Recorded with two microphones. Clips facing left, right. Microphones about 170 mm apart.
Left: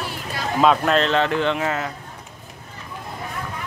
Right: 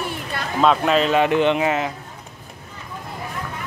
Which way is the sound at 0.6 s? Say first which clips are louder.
Right 1 dB; centre (ahead or behind).